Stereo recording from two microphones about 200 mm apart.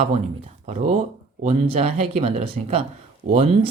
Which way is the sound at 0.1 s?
35° right (ahead or behind).